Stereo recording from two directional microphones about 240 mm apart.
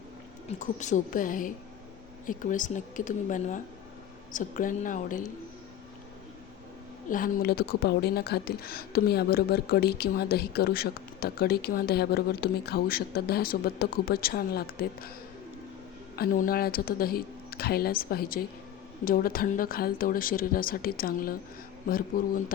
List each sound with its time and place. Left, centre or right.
0.4 s speech: left
7.1 s speech: left
16.1 s speech: left